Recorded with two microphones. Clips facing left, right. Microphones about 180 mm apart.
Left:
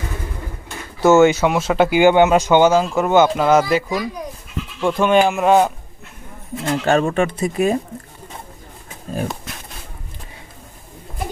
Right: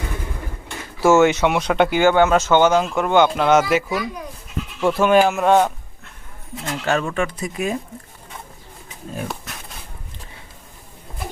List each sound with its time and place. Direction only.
1.0 s speech: centre (ahead or behind)
2.0 s speech: 15° left (ahead or behind)
4.8 s speech: 5° right (ahead or behind)
6.6 s speech: 30° left (ahead or behind)
7.5 s speech: 40° left (ahead or behind)